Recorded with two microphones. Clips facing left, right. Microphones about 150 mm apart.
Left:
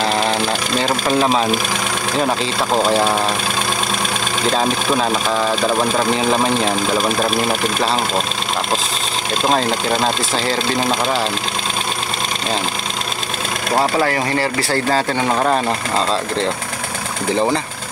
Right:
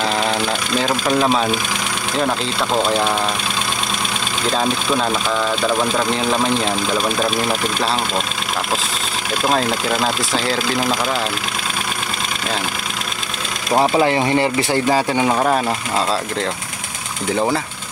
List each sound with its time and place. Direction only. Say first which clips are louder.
0.7 s speech: even; centre (ahead or behind)
6.1 s speech: left 2 dB; 5° left (ahead or behind)
9.5 s speech: left 1 dB; 5° right (ahead or behind)
13.7 s speech: right 2 dB; 15° right (ahead or behind)